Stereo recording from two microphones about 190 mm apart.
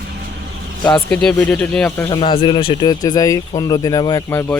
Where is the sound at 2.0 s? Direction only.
25° left (ahead or behind).